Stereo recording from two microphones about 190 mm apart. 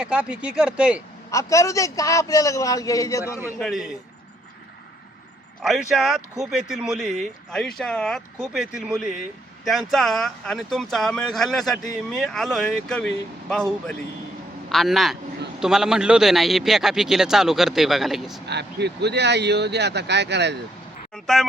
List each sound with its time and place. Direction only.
0.0 s speech: 5° right (ahead or behind)
1.3 s a man's voice: 15° left (ahead or behind)
3.6 s speech: centre (ahead or behind)
5.6 s speech: centre (ahead or behind)
14.7 s speech: centre (ahead or behind)
18.4 s speech: 60° right (ahead or behind)